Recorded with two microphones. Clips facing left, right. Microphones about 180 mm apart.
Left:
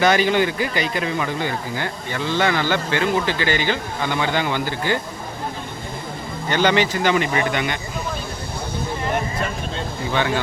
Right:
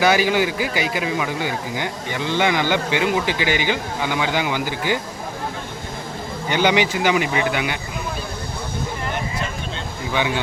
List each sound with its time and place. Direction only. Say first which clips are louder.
0.0 s speech: even; 5° right (ahead or behind)
6.5 s speech: even; 10° right (ahead or behind)
10.1 s speech: left 1 dB; 10° right (ahead or behind)